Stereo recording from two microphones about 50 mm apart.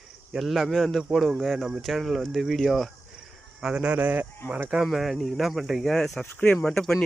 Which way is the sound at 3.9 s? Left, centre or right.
Right.